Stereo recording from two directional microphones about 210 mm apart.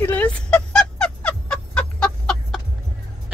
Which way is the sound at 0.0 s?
10° left (ahead or behind).